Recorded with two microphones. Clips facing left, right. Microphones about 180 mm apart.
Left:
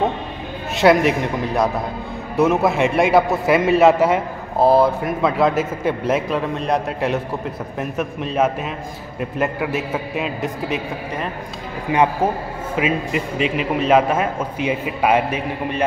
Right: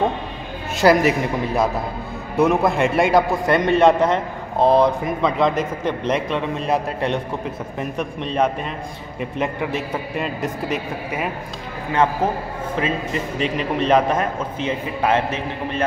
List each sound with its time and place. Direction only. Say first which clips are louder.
0.7 s a man's voice: left 1 dB; centre (ahead or behind)
11.9 s a man's voice: left 2 dB; 15° left (ahead or behind)